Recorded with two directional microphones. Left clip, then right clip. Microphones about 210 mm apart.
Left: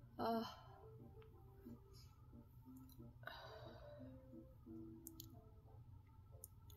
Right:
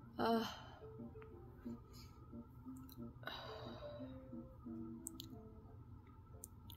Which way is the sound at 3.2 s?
10° right (ahead or behind).